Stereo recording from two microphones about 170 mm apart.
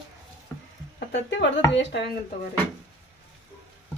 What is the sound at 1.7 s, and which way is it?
Speech, 90° left.